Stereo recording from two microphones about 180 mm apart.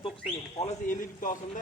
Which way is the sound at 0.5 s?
45° left (ahead or behind).